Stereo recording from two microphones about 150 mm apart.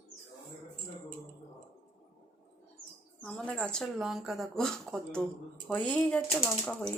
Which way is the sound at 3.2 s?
5° left (ahead or behind).